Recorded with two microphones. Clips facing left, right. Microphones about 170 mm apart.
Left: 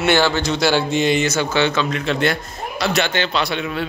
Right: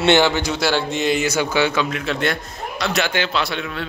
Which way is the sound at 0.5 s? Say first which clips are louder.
Left 3 dB; centre (ahead or behind).